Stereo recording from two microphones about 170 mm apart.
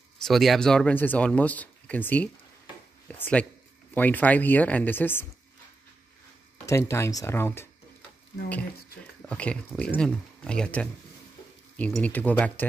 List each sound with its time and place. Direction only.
0.2 s speech: centre (ahead or behind)
6.6 s speech: 15° left (ahead or behind)
9.3 s speech: 5° left (ahead or behind)